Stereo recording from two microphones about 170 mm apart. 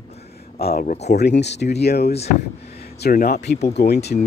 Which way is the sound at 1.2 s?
90° left.